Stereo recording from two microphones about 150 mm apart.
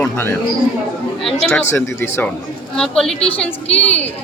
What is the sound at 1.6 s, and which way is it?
A woman's voice, 15° left (ahead or behind).